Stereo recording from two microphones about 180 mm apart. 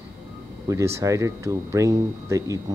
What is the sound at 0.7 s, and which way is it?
Speech, 15° right (ahead or behind).